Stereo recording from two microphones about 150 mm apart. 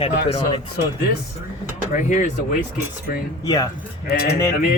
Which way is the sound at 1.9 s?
55° left (ahead or behind).